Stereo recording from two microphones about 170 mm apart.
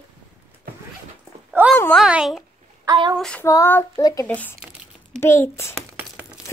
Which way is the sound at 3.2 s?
5° left (ahead or behind).